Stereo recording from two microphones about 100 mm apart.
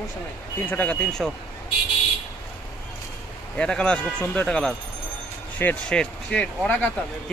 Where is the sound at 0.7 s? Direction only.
15° left (ahead or behind).